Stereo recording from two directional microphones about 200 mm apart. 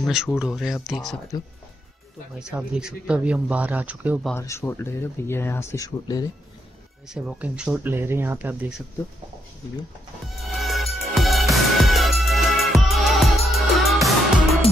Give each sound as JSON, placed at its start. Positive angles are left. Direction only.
{"t": 0.0, "sound": "speech", "side_deg": -5}
{"t": 1.3, "sound": "speech", "side_deg": 20}
{"t": 2.3, "sound": "speech", "side_deg": -5}
{"t": 4.4, "sound": "speech", "side_deg": 15}
{"t": 7.1, "sound": "speech", "side_deg": -5}
{"t": 10.4, "sound": "music", "side_deg": 0}